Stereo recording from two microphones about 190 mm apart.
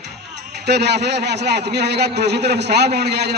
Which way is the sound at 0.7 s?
60° right (ahead or behind).